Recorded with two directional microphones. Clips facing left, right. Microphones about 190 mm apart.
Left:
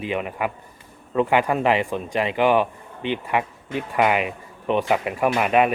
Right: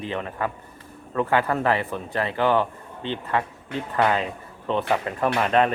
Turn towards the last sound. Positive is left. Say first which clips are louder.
# left 2 dB
turn(degrees=10)  # may be behind; listen again after turning